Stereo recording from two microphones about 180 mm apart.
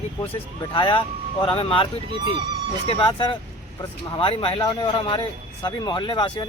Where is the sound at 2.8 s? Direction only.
30° left (ahead or behind).